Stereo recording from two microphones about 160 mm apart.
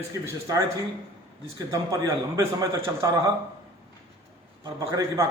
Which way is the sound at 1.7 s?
20° right (ahead or behind).